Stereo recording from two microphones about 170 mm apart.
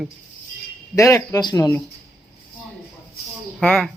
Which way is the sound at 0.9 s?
15° left (ahead or behind).